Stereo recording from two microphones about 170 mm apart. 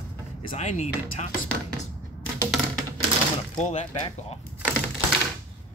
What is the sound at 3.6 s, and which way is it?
Speech, 35° left (ahead or behind).